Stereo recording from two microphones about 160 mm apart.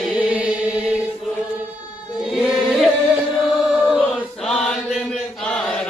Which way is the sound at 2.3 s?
Centre (ahead or behind).